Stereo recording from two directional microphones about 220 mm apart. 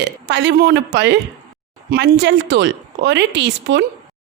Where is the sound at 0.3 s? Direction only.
50° right (ahead or behind).